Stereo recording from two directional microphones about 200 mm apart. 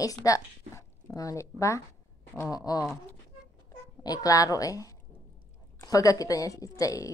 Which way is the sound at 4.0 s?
20° left (ahead or behind).